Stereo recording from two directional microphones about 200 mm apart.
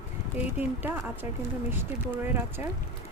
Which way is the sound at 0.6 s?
10° right (ahead or behind).